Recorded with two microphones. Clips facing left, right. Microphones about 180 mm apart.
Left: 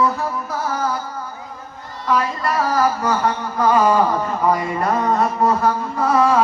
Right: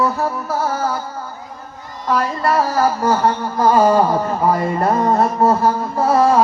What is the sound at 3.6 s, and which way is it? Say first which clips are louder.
Music: right 2 dB; 35° right (ahead or behind).